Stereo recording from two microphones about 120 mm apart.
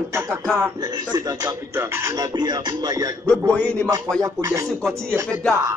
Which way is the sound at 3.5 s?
10° left (ahead or behind).